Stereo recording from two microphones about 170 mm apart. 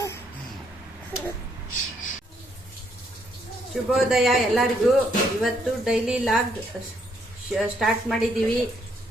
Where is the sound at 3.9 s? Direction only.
Centre (ahead or behind).